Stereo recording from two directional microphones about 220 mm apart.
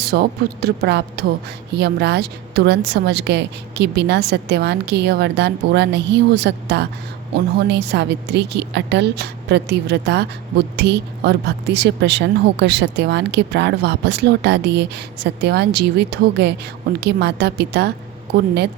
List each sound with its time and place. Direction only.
0.0 s a woman's voice: 45° right (ahead or behind)